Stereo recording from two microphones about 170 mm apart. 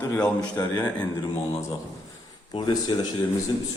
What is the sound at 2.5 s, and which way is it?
Speech, 25° left (ahead or behind).